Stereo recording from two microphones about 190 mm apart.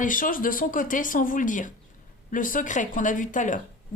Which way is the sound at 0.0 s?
45° left (ahead or behind).